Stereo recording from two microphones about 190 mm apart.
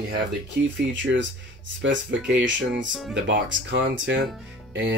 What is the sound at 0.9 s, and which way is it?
Speech, 75° right (ahead or behind).